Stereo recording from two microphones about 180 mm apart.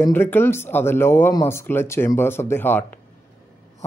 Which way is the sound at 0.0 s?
10° left (ahead or behind).